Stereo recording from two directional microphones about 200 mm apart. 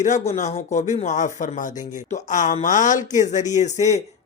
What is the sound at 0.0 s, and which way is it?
Speech, 40° left (ahead or behind).